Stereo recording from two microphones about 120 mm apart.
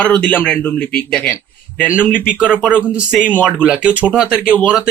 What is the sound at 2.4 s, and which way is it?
Speech, 5° right (ahead or behind).